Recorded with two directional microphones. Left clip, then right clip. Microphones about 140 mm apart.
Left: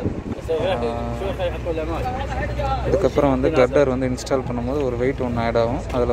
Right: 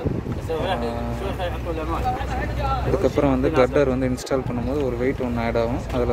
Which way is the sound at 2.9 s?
15° right (ahead or behind).